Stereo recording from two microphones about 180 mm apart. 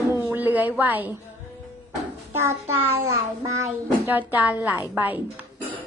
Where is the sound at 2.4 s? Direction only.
15° right (ahead or behind).